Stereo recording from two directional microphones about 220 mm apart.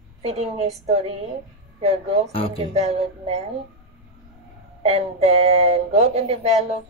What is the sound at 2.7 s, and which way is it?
Speech, 25° right (ahead or behind).